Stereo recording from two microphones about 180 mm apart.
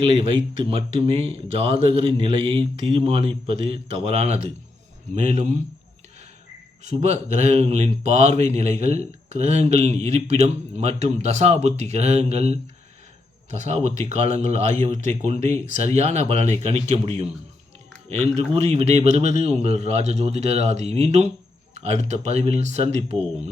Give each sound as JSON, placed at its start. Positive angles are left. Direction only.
{"t": 0.0, "sound": "speech", "side_deg": -30}
{"t": 6.8, "sound": "speech", "side_deg": -35}
{"t": 13.6, "sound": "speech", "side_deg": -35}